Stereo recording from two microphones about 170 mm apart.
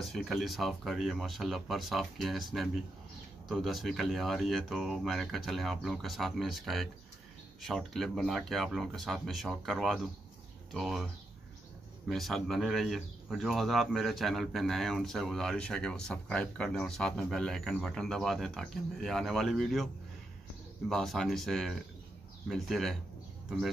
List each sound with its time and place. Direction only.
0.1 s speech: centre (ahead or behind)
12.1 s speech: centre (ahead or behind)
20.9 s speech: centre (ahead or behind)